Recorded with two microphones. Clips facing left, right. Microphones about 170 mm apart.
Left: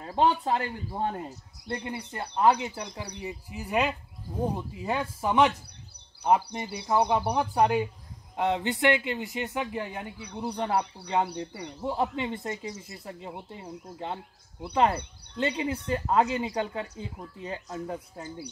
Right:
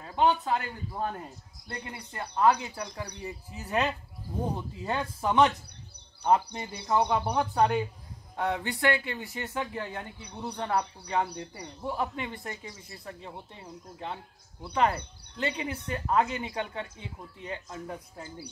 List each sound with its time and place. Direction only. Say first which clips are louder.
0.0 s speech: left 1 dB; 30° left (ahead or behind)